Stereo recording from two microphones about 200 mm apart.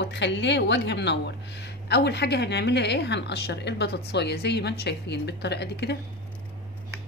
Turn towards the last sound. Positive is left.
turn(degrees=55)  # may be behind; listen again after turning